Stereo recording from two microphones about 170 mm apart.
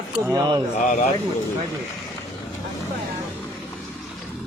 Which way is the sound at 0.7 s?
40° left (ahead or behind).